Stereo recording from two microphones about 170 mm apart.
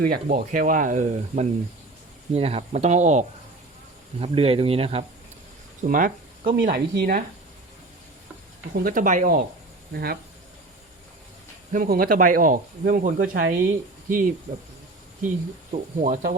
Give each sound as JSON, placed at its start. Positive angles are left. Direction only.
{"t": 0.0, "sound": "speech", "side_deg": -60}
{"t": 2.3, "sound": "speech", "side_deg": -35}
{"t": 5.8, "sound": "a sound", "side_deg": -55}
{"t": 6.6, "sound": "speech", "side_deg": -65}
{"t": 7.0, "sound": "speech", "side_deg": -55}
{"t": 8.8, "sound": "speech", "side_deg": -55}
{"t": 9.9, "sound": "speech", "side_deg": -65}
{"t": 11.7, "sound": "speech", "side_deg": -55}
{"t": 15.7, "sound": "speech", "side_deg": -45}